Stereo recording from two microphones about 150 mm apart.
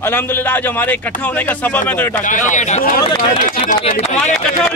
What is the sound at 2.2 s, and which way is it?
Speech, 55° left (ahead or behind).